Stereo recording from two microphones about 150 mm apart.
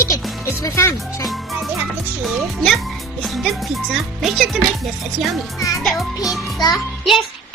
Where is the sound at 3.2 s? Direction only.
Centre (ahead or behind).